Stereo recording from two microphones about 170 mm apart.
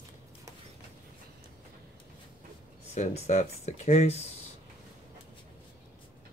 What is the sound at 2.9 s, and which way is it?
Speech, 40° left (ahead or behind).